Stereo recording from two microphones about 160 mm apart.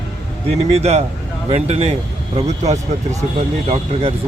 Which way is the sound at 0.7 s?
40° right (ahead or behind).